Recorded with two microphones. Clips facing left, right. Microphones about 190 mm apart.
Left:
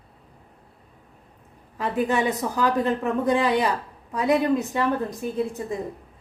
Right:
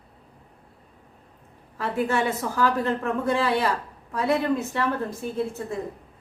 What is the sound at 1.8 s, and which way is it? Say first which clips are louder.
A woman's voice: left 1 dB; 15° left (ahead or behind).